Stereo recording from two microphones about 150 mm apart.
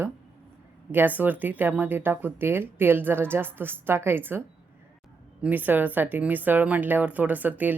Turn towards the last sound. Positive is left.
turn(degrees=-10)  # may be behind; listen again after turning